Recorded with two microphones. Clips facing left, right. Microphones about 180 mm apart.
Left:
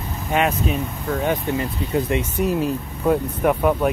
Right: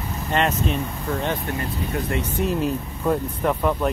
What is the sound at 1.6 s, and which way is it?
Speech, 20° left (ahead or behind).